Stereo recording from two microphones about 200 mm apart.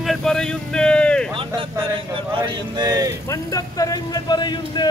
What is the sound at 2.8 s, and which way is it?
Speech, 20° right (ahead or behind).